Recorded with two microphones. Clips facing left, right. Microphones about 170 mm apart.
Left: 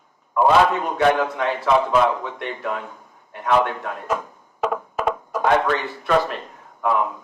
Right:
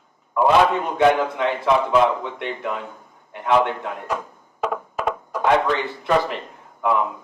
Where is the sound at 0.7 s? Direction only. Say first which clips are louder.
Right 1 dB; 20° right (ahead or behind).